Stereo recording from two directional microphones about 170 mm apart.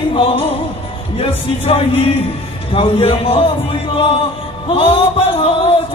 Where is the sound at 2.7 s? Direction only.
35° left (ahead or behind).